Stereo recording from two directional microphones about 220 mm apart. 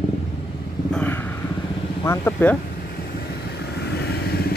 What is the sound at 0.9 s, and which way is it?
Vehicle, 5° left (ahead or behind).